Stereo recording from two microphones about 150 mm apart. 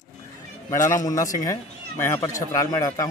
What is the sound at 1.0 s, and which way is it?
Speech, 25° left (ahead or behind).